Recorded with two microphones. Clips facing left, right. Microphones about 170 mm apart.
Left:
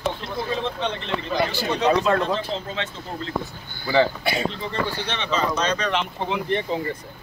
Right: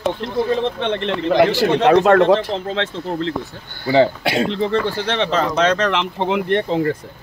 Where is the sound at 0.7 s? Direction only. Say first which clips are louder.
Right 6 dB; 70° right (ahead or behind).